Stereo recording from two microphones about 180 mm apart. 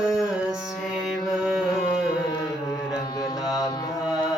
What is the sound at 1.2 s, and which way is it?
Music, centre (ahead or behind).